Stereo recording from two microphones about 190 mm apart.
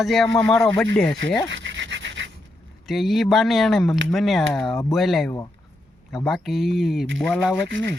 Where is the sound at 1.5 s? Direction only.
75° right (ahead or behind).